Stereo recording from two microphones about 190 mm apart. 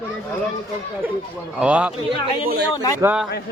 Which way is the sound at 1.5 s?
5° right (ahead or behind).